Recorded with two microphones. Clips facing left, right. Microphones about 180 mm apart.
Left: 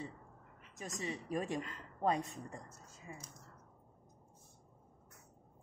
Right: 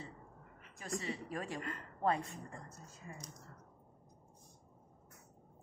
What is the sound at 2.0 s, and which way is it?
Speech, 15° left (ahead or behind).